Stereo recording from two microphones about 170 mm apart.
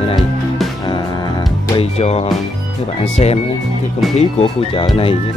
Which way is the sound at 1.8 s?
35° left (ahead or behind).